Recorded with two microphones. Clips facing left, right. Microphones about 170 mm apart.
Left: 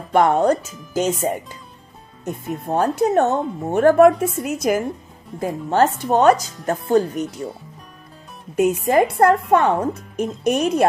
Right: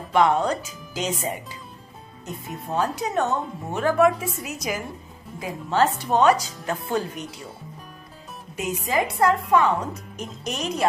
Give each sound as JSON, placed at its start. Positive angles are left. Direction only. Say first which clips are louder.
{"t": 0.1, "sound": "speech", "louder": "left 4 dB", "side_deg": 50}
{"t": 8.5, "sound": "speech", "louder": "left 9 dB", "side_deg": 55}